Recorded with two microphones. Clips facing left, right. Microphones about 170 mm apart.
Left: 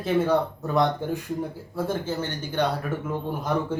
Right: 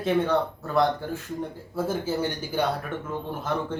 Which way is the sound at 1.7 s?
Centre (ahead or behind).